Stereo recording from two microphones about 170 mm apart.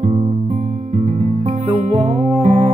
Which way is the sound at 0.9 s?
45° right (ahead or behind).